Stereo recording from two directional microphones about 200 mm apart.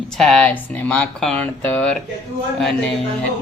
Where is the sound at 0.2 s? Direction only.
5° left (ahead or behind).